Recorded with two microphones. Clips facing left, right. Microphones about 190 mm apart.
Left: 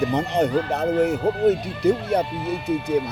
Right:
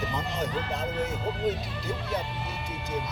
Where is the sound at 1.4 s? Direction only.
70° left (ahead or behind).